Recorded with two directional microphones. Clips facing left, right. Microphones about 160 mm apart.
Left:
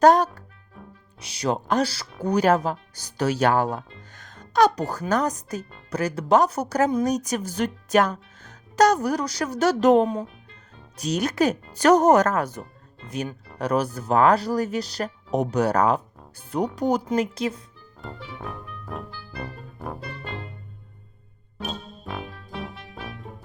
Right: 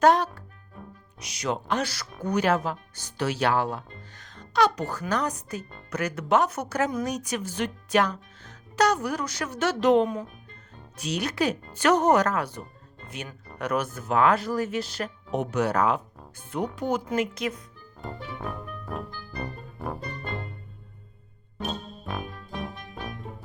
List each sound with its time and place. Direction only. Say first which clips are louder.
0.0 s speech: left 4 dB; 40° left (ahead or behind)
1.2 s speech: left 4 dB; 30° left (ahead or behind)
13.6 s speech: left 4 dB; 35° left (ahead or behind)
18.9 s music: left 1 dB; 5° left (ahead or behind)
21.6 s music: right 1 dB; 5° left (ahead or behind)